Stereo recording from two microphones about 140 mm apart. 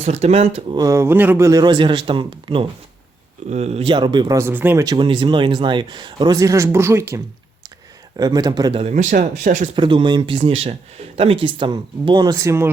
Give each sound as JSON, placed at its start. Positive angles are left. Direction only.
{"t": 0.0, "sound": "speech", "side_deg": -50}
{"t": 0.7, "sound": "speech", "side_deg": -25}
{"t": 1.5, "sound": "a man's voice", "side_deg": -30}
{"t": 3.5, "sound": "a man's voice", "side_deg": -50}
{"t": 4.4, "sound": "speech", "side_deg": -15}
{"t": 4.8, "sound": "a man's voice", "side_deg": -30}
{"t": 8.1, "sound": "speech", "side_deg": -30}
{"t": 8.7, "sound": "speech", "side_deg": -50}
{"t": 9.7, "sound": "a man's voice", "side_deg": -35}